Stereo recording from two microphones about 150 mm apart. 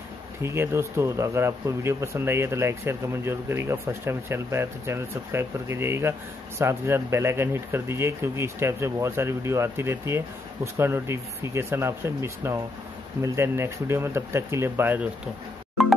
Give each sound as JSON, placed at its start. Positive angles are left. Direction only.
{"t": 0.4, "sound": "speech", "side_deg": -20}
{"t": 15.8, "sound": "music", "side_deg": 0}